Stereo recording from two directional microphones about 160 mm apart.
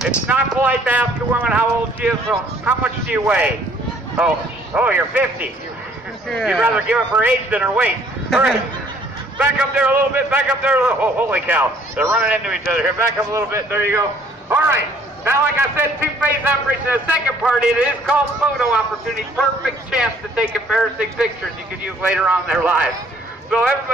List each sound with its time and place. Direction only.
0.3 s a man's voice: 10° right (ahead or behind)
4.7 s a man's voice: 10° right (ahead or behind)
13.3 s a man's voice: 15° right (ahead or behind)
15.2 s a man's voice: 15° right (ahead or behind)